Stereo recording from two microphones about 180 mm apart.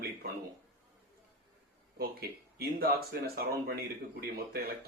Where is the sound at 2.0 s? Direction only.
55° right (ahead or behind).